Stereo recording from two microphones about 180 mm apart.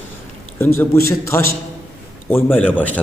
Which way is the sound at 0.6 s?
15° left (ahead or behind).